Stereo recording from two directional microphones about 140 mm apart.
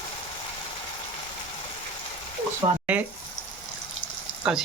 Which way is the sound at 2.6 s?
35° right (ahead or behind).